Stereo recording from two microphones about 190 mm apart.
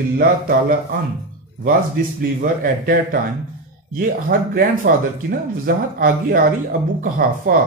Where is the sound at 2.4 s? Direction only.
50° right (ahead or behind).